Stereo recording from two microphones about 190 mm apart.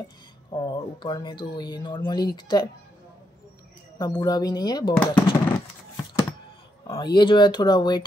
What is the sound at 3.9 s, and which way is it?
Speech, 20° left (ahead or behind).